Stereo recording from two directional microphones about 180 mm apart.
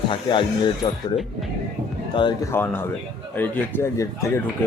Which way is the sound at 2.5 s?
10° left (ahead or behind).